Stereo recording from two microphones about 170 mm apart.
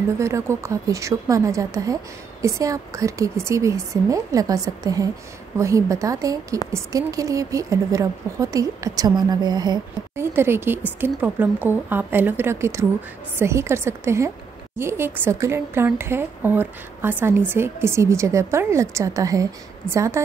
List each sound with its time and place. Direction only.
0.2 s a woman's voice: 15° right (ahead or behind)